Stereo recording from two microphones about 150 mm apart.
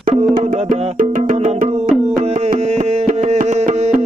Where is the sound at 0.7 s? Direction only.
60° right (ahead or behind).